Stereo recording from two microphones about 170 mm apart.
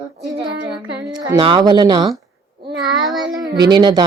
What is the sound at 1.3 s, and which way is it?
Speech, 30° right (ahead or behind).